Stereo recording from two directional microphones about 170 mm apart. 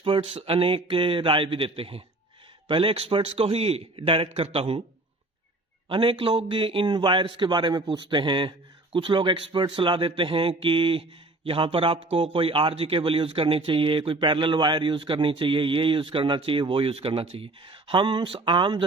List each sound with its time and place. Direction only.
0.0 s a man's voice: 30° right (ahead or behind)
5.9 s a man's voice: 30° right (ahead or behind)